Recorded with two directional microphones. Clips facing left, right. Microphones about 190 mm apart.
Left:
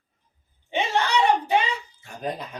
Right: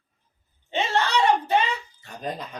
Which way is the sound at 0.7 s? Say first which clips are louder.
Even; 15° left (ahead or behind).